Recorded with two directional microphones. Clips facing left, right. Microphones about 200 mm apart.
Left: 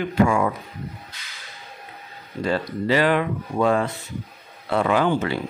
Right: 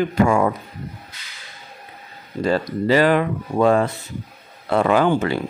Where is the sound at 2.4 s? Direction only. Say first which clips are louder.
Right 4 dB; 40° right (ahead or behind).